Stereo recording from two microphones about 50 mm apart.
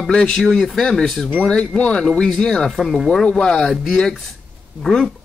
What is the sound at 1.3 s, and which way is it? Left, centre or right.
Speech, left.